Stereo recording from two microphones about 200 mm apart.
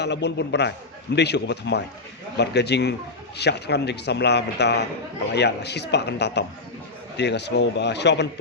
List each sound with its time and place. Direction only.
0.0 s a man's voice: 60° left (ahead or behind)